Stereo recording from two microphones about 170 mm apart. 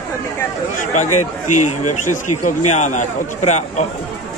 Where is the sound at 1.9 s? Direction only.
50° left (ahead or behind).